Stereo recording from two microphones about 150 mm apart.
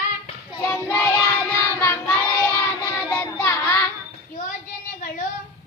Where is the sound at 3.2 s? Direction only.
15° left (ahead or behind).